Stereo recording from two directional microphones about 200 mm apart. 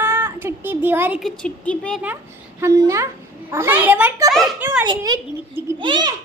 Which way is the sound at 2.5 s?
15° right (ahead or behind).